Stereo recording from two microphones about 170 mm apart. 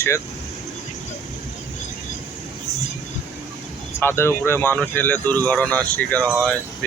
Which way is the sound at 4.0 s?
15° left (ahead or behind).